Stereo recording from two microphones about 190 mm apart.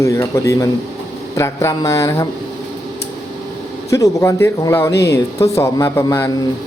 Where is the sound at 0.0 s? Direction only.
15° left (ahead or behind).